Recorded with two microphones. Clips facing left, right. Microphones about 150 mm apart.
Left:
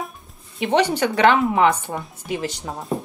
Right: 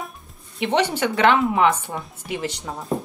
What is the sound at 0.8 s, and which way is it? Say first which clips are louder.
Speech: left 2 dB; 35° left (ahead or behind).